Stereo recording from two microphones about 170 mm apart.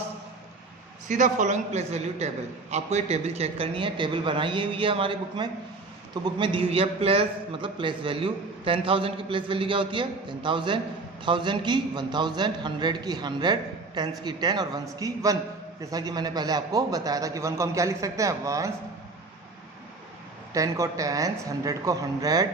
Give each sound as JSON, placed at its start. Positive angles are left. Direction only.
{"t": 1.0, "sound": "a man's voice", "side_deg": -50}
{"t": 20.5, "sound": "a man's voice", "side_deg": -20}